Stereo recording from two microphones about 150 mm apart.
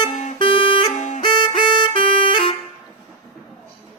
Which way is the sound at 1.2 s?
30° left (ahead or behind).